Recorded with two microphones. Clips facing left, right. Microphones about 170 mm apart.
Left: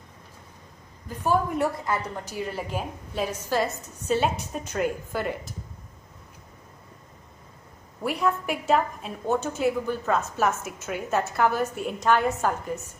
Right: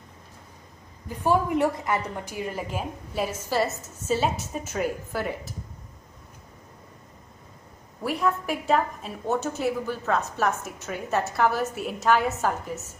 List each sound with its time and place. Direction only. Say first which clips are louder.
1.0 s a woman's voice: right 1 dB; 15° right (ahead or behind)
8.0 s a woman's voice: even; centre (ahead or behind)